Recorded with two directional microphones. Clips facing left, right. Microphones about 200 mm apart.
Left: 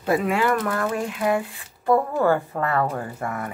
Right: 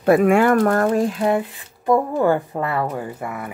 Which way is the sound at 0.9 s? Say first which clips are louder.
Right 5 dB; 35° right (ahead or behind).